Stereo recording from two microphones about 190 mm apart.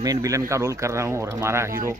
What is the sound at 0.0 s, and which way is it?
Speech, 20° right (ahead or behind).